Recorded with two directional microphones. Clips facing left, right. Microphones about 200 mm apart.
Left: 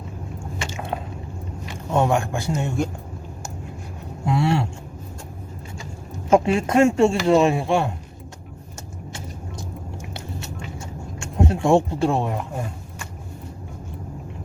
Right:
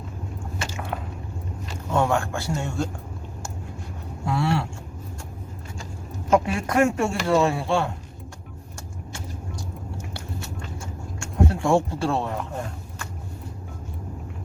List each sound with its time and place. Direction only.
1.9 s speech: 20° left (ahead or behind)
4.3 s speech: 20° left (ahead or behind)
6.3 s speech: 25° left (ahead or behind)
11.2 s speech: 20° left (ahead or behind)